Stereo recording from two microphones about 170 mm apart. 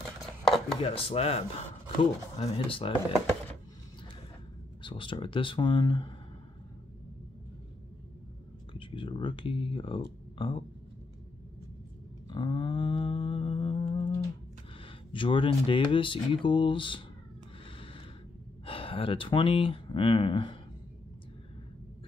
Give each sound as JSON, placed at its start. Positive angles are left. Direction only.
{"t": 0.2, "sound": "chopping", "side_deg": 0}
{"t": 0.8, "sound": "speech", "side_deg": 35}
{"t": 4.8, "sound": "speech", "side_deg": 30}
{"t": 8.7, "sound": "speech", "side_deg": 30}
{"t": 12.3, "sound": "humming", "side_deg": 30}
{"t": 15.1, "sound": "speech", "side_deg": 30}
{"t": 17.6, "sound": "a sound", "side_deg": 30}
{"t": 18.7, "sound": "speech", "side_deg": 30}